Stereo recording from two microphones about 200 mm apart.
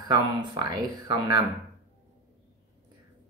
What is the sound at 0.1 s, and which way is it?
Speech, 20° right (ahead or behind).